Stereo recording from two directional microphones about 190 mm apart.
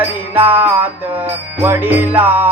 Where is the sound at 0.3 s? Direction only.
10° right (ahead or behind).